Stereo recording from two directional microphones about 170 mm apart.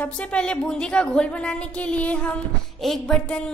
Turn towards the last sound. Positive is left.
turn(degrees=5)  # may be behind; listen again after turning